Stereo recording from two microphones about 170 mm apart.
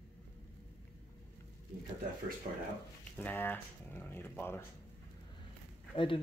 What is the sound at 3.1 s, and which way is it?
Speech, 10° left (ahead or behind).